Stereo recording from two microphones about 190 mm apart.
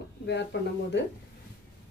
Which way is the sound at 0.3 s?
65° left (ahead or behind).